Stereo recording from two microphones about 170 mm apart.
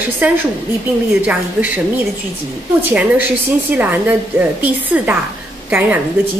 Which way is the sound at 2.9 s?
10° right (ahead or behind).